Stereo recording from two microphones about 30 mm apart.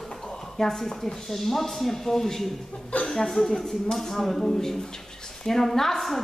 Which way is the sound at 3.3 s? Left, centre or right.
Centre.